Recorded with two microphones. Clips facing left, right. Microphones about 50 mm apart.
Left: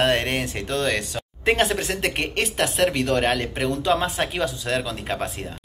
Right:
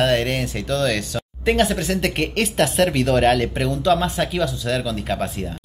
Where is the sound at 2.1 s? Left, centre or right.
Centre.